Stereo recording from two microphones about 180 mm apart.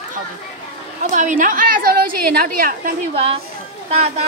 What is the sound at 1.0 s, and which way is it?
A woman's voice, 45° right (ahead or behind).